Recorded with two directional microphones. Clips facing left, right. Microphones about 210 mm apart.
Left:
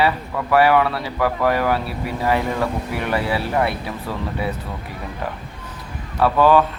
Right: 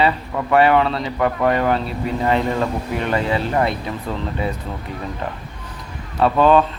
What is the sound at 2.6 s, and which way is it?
Speech, 20° right (ahead or behind).